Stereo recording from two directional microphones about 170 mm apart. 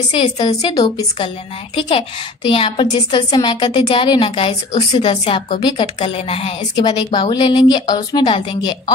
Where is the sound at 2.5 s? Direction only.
30° left (ahead or behind).